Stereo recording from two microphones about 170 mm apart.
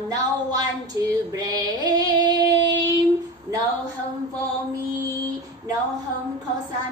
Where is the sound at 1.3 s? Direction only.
20° right (ahead or behind).